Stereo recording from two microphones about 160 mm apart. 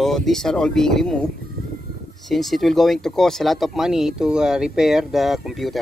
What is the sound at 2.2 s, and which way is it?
Speech, centre (ahead or behind).